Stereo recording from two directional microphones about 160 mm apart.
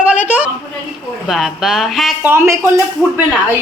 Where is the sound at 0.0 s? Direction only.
10° right (ahead or behind).